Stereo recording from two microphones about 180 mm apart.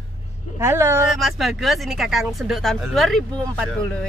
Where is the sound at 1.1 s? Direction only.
Centre (ahead or behind).